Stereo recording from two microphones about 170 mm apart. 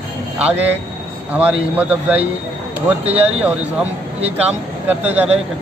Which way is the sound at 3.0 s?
35° right (ahead or behind).